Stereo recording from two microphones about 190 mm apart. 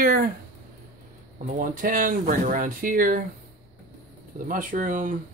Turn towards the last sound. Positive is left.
turn(degrees=-45)  # may be behind; listen again after turning